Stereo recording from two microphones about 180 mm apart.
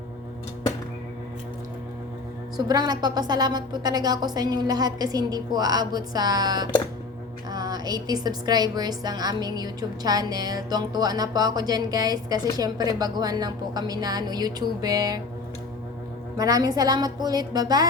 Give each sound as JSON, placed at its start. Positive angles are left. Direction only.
{"t": 2.6, "sound": "a woman's voice", "side_deg": -20}
{"t": 16.4, "sound": "a woman's voice", "side_deg": -20}